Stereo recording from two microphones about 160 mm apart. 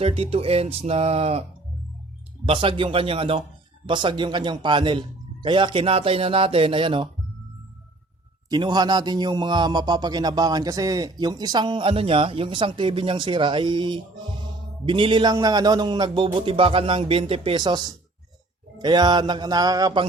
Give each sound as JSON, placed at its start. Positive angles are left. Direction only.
{"t": 0.0, "sound": "a man's voice", "side_deg": -35}
{"t": 2.5, "sound": "a man's voice", "side_deg": -35}
{"t": 8.4, "sound": "a man's voice", "side_deg": -25}